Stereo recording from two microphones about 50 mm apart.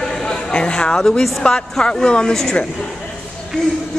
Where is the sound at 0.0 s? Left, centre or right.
Centre.